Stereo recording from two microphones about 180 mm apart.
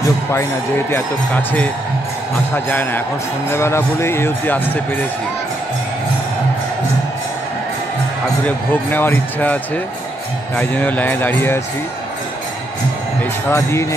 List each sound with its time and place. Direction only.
0.0 s speech: 15° left (ahead or behind)
8.5 s speech: 10° left (ahead or behind)
13.5 s speech: 15° left (ahead or behind)